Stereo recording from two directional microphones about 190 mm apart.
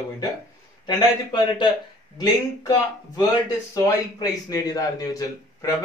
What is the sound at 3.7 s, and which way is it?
A man's voice, 20° left (ahead or behind).